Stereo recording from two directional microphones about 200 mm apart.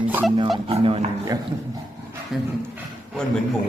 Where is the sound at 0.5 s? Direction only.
25° right (ahead or behind).